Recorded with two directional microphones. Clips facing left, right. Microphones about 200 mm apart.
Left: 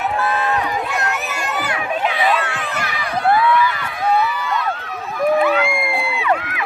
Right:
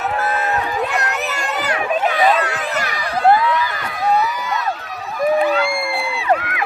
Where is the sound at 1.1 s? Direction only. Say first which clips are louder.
Right 1 dB; 40° right (ahead or behind).